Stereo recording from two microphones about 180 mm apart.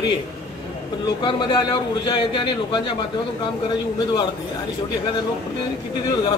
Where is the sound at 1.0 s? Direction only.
25° left (ahead or behind).